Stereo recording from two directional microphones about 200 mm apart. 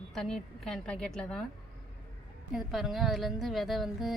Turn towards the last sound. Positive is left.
turn(degrees=0)  # may be behind; listen again after turning